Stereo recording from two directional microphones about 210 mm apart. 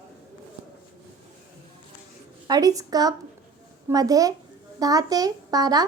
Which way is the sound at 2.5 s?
15° right (ahead or behind).